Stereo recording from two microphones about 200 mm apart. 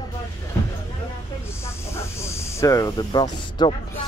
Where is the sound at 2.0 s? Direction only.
15° left (ahead or behind).